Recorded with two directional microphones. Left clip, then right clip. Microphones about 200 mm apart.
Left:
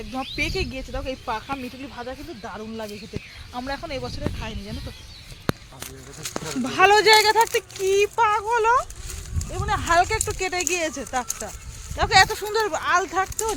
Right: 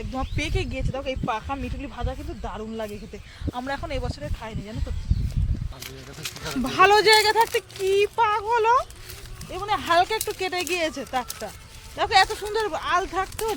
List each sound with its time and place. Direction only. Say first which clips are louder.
0.1 s speech: left 3 dB; 20° left (ahead or behind)
6.2 s speech: left 2 dB; 40° right (ahead or behind)
6.6 s speech: even; 10° left (ahead or behind)
11.9 s speech: left 2 dB; 40° left (ahead or behind)